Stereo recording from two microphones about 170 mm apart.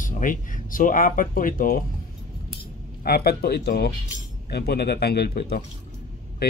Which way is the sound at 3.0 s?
70° left (ahead or behind).